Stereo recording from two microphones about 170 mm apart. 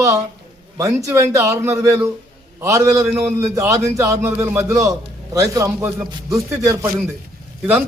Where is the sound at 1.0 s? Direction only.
20° right (ahead or behind).